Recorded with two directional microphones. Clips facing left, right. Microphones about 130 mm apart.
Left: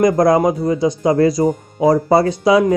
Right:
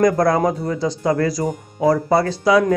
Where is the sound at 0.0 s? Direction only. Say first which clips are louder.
Left 3 dB; 20° left (ahead or behind).